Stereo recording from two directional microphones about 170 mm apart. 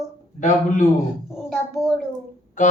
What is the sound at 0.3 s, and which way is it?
Speech, 45° left (ahead or behind).